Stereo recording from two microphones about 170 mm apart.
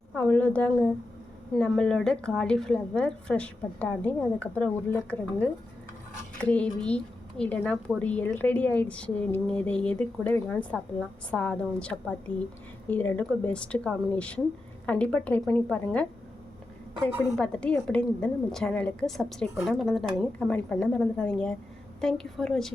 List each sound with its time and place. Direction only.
0.2 s a woman's voice: 10° left (ahead or behind)
17.3 s a woman's voice: 5° left (ahead or behind)